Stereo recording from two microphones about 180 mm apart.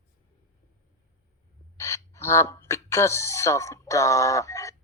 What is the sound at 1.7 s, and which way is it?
Speech, 15° left (ahead or behind).